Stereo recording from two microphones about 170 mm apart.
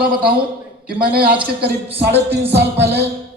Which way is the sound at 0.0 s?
60° right (ahead or behind).